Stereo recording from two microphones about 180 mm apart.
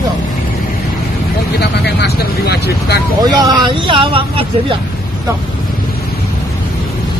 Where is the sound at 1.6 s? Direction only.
65° left (ahead or behind).